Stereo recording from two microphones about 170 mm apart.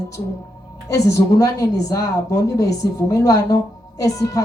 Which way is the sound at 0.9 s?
20° left (ahead or behind).